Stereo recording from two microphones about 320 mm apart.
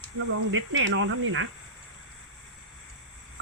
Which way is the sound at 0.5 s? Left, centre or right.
Right.